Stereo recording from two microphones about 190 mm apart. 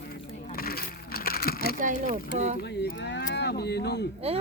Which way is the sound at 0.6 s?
50° left (ahead or behind).